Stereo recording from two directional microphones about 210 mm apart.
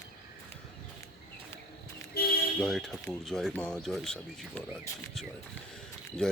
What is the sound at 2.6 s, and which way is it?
Speech, centre (ahead or behind).